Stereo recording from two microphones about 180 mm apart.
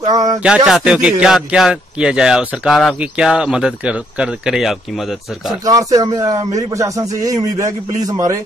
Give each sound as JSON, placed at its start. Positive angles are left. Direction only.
{"t": 0.0, "sound": "a man's voice", "side_deg": -20}
{"t": 0.7, "sound": "speech", "side_deg": -5}
{"t": 5.6, "sound": "a man's voice", "side_deg": -20}